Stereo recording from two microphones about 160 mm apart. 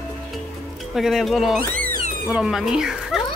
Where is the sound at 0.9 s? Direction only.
Centre (ahead or behind).